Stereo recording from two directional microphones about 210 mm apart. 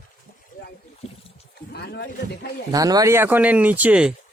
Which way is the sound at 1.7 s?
50° left (ahead or behind).